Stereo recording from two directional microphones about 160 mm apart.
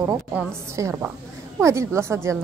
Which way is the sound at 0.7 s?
15° right (ahead or behind).